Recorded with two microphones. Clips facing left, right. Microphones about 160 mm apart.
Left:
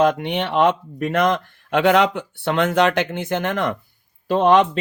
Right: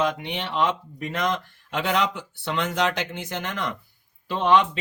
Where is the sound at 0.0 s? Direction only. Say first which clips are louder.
Left 8 dB; 55° left (ahead or behind).